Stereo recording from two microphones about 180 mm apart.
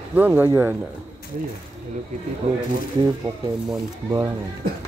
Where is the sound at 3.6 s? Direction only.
20° right (ahead or behind).